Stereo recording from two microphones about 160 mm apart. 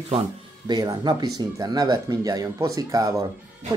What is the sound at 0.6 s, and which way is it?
Speech, 25° right (ahead or behind).